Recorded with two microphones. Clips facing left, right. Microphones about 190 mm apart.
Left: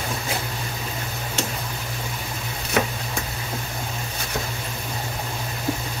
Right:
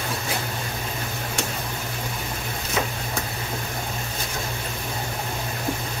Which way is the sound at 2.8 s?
65° left (ahead or behind).